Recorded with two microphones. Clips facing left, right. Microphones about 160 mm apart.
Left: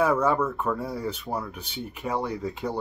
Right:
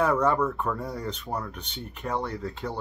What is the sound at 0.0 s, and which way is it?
Speech, 5° left (ahead or behind).